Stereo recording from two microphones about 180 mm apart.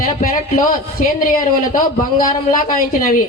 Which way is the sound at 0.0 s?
50° left (ahead or behind).